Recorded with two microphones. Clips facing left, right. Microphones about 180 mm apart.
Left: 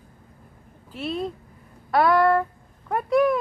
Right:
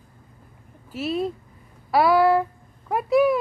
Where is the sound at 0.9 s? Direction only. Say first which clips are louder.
Right 3 dB; 5° right (ahead or behind).